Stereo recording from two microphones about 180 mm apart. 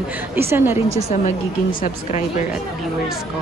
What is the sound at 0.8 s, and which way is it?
Speech, 40° right (ahead or behind).